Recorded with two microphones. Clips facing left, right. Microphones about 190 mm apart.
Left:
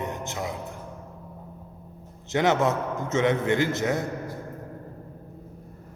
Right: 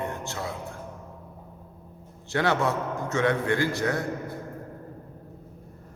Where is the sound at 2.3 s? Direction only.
20° left (ahead or behind).